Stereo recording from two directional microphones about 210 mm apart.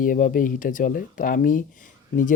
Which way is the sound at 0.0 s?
40° left (ahead or behind).